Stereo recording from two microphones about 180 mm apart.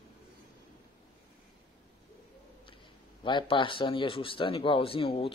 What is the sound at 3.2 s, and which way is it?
Speech, 25° left (ahead or behind).